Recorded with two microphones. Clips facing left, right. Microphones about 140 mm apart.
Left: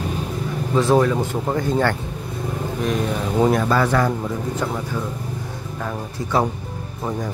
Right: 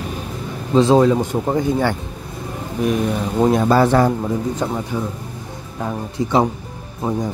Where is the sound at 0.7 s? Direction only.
20° right (ahead or behind).